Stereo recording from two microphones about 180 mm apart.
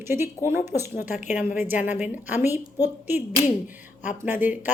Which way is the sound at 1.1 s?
45° left (ahead or behind).